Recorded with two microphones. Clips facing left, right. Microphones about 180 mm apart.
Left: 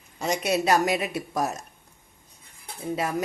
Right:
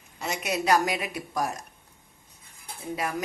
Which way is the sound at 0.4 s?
25° left (ahead or behind).